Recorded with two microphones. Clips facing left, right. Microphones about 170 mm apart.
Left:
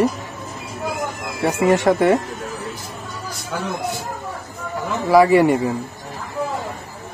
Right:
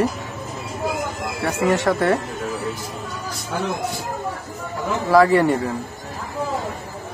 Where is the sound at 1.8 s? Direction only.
15° left (ahead or behind).